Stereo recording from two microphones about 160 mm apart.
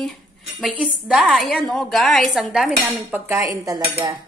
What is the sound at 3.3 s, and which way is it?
Dishes, 20° right (ahead or behind).